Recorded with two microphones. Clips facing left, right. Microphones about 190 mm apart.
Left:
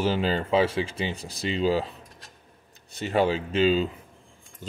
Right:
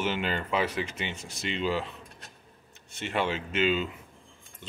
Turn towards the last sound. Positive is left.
turn(degrees=35)  # may be behind; listen again after turning